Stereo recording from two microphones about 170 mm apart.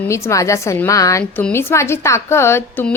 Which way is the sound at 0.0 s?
15° left (ahead or behind).